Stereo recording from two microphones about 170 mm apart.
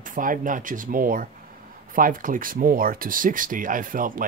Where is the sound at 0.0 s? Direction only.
55° right (ahead or behind).